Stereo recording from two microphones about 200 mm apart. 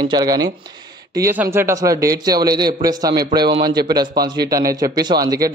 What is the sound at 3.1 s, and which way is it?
Speech, 50° right (ahead or behind).